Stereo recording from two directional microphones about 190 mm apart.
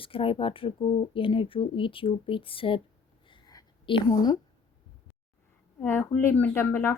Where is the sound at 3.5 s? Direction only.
20° left (ahead or behind).